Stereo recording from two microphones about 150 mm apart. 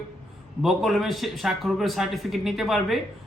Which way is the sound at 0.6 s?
Centre (ahead or behind).